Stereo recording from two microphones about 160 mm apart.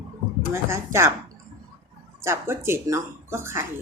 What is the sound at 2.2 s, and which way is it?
Speech, 15° right (ahead or behind).